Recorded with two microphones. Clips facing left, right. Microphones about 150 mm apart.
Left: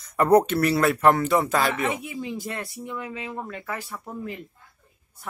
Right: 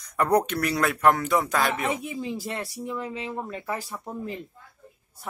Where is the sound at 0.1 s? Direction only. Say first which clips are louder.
Left 4 dB; 5° left (ahead or behind).